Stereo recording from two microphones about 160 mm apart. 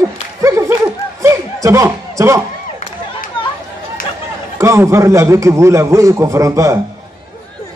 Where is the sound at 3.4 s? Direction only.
30° left (ahead or behind).